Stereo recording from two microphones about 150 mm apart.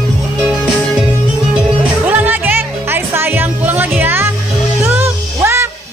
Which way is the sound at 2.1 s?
10° right (ahead or behind).